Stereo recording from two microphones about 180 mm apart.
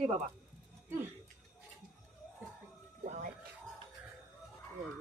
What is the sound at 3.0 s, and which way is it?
Music, 45° right (ahead or behind).